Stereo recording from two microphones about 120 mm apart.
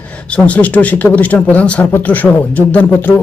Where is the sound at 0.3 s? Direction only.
10° left (ahead or behind).